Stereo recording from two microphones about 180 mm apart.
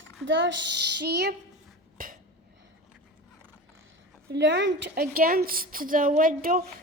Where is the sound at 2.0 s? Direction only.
50° right (ahead or behind).